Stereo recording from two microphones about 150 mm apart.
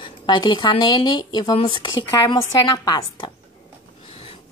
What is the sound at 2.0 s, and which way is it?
A woman's voice, 20° left (ahead or behind).